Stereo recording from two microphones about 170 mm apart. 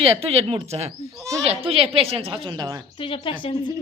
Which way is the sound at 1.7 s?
35° right (ahead or behind).